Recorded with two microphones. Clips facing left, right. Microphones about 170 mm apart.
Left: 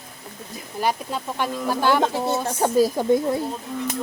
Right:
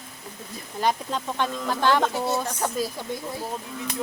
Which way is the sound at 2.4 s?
30° left (ahead or behind).